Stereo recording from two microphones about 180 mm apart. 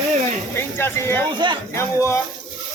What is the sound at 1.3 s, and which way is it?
Speech, 25° right (ahead or behind).